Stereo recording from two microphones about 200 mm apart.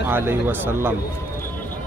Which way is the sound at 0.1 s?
10° right (ahead or behind).